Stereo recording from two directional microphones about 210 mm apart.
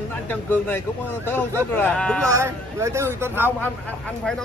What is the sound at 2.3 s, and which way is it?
Speech, 15° right (ahead or behind).